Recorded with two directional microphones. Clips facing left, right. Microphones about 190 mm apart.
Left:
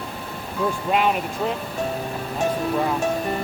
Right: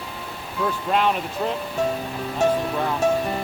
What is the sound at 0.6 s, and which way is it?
Speech, 5° left (ahead or behind).